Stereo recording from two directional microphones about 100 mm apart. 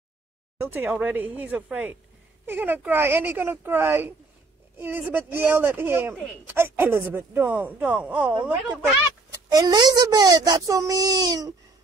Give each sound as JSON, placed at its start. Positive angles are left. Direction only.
{"t": 0.6, "sound": "speech", "side_deg": -20}
{"t": 9.3, "sound": "speech", "side_deg": -40}